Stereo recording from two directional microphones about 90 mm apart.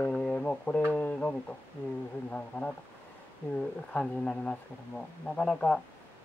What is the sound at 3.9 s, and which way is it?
Speech, 10° left (ahead or behind).